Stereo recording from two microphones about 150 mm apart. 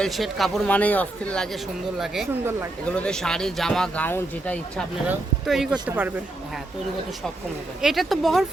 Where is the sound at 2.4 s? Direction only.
15° right (ahead or behind).